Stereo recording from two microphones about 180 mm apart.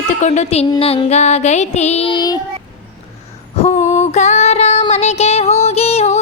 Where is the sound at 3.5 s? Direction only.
35° left (ahead or behind).